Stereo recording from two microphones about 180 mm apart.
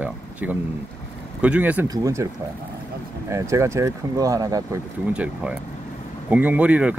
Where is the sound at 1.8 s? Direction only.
20° right (ahead or behind).